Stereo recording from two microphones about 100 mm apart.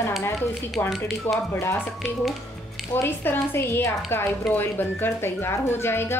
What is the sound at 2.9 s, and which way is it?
Speech, 20° left (ahead or behind).